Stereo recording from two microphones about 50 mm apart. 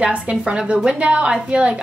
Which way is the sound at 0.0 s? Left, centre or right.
Right.